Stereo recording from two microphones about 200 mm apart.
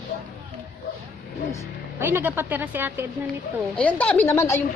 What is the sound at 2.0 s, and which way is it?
A woman's voice, 10° right (ahead or behind).